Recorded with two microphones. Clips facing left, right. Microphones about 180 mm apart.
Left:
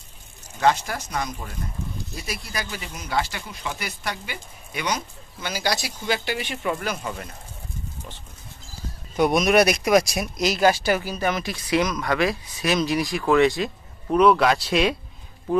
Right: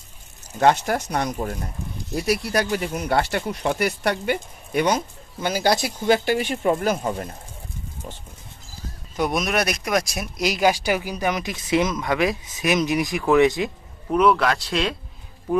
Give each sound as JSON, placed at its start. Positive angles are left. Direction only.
{"t": 0.6, "sound": "speech", "side_deg": -55}
{"t": 9.1, "sound": "speech", "side_deg": 0}
{"t": 10.4, "sound": "speech", "side_deg": -15}
{"t": 14.1, "sound": "speech", "side_deg": 0}